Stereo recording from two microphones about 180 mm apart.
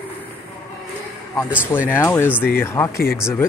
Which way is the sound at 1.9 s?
15° left (ahead or behind).